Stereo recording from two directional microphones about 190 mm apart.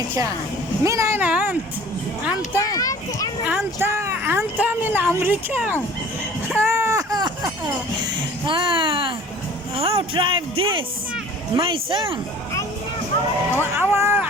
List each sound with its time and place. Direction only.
0.1 s speech: 15° right (ahead or behind)
2.6 s a sound: 20° left (ahead or behind)
3.4 s speech: 10° right (ahead or behind)
6.6 s a sound: 15° right (ahead or behind)
8.4 s speech: 25° right (ahead or behind)
13.6 s speech: 10° right (ahead or behind)